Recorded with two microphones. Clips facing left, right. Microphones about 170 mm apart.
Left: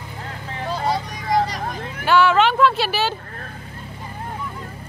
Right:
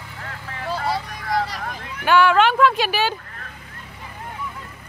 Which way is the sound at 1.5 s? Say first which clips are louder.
Left 3 dB; 40° left (ahead or behind).